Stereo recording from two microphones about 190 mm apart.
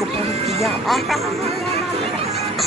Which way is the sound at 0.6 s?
Centre (ahead or behind).